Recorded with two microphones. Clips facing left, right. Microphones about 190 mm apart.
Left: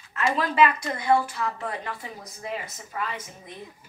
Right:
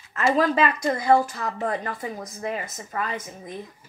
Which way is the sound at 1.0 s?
45° right (ahead or behind).